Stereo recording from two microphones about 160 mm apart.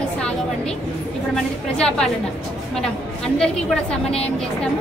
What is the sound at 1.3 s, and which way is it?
Speech, 5° left (ahead or behind).